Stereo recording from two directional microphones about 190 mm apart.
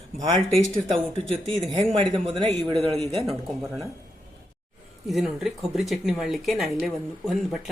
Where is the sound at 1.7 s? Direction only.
30° right (ahead or behind).